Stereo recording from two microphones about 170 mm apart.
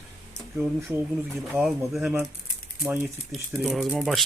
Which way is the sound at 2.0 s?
15° right (ahead or behind).